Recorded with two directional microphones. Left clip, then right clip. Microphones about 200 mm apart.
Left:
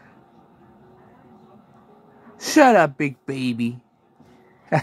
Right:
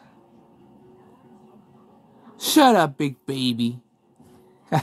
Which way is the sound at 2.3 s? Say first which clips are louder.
Left 2 dB; 10° left (ahead or behind).